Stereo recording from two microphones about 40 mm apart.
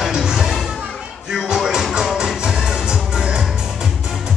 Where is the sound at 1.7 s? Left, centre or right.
Centre.